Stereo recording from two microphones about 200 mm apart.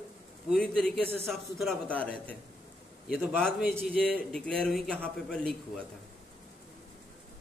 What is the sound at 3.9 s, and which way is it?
Speech, 50° left (ahead or behind).